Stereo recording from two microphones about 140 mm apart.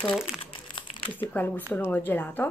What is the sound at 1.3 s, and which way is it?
Speech, 10° left (ahead or behind).